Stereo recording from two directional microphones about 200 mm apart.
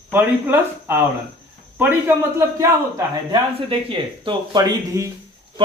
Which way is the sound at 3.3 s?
25° right (ahead or behind).